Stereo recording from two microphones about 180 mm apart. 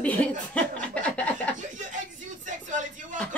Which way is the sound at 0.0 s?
10° left (ahead or behind).